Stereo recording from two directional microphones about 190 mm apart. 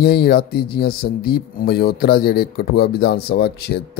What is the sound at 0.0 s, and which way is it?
Speech, 55° left (ahead or behind).